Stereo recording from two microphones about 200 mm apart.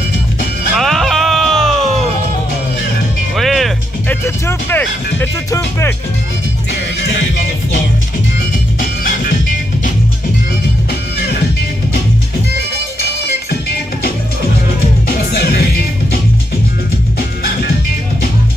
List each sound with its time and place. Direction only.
0.7 s music: centre (ahead or behind)
3.3 s music: centre (ahead or behind)
4.2 s music: 10° left (ahead or behind)
13.5 s music: 55° left (ahead or behind)